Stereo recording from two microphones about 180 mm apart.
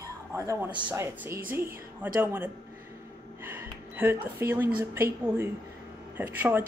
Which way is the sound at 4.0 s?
10° right (ahead or behind).